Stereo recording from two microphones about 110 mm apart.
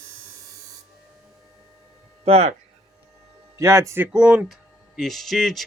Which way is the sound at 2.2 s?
70° right (ahead or behind).